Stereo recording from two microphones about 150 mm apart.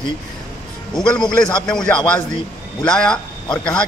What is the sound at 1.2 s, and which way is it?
Speech, 5° left (ahead or behind).